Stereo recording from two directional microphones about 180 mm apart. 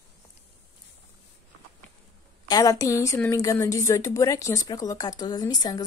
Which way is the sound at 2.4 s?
20° left (ahead or behind).